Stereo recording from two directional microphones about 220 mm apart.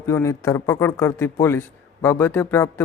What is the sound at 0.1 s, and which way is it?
A man's voice, 15° left (ahead or behind).